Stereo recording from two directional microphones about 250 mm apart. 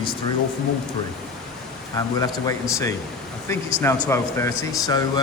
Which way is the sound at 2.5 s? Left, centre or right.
Centre.